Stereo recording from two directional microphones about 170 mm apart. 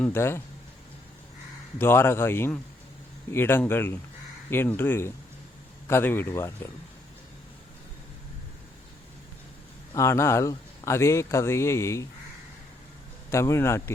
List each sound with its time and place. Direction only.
0.0 s speech: 15° left (ahead or behind)
1.8 s speech: 15° left (ahead or behind)
9.9 s speech: 15° left (ahead or behind)
13.3 s speech: 15° left (ahead or behind)